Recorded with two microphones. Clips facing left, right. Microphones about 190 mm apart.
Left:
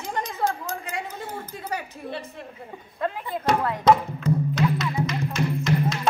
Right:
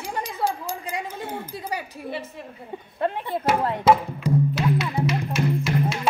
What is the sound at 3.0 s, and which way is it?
Speech, 30° right (ahead or behind).